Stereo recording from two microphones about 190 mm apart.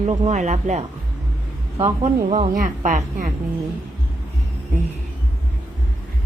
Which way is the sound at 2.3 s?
40° right (ahead or behind).